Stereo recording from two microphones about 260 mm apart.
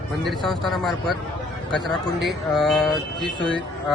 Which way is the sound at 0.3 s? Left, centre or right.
Centre.